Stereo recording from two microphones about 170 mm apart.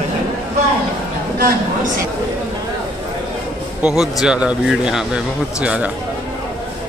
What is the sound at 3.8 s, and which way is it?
Speech, 5° right (ahead or behind).